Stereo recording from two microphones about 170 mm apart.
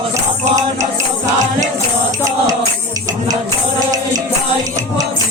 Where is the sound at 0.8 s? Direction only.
20° right (ahead or behind).